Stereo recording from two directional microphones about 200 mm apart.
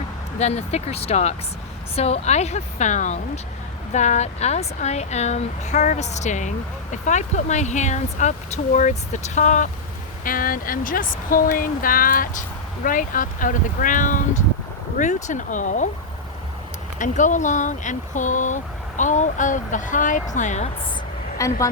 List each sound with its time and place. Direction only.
0.3 s speech: 35° left (ahead or behind)
17.0 s speech: 40° left (ahead or behind)
21.3 s speech: 15° left (ahead or behind)